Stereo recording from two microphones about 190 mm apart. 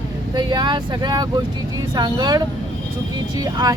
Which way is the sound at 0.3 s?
20° right (ahead or behind).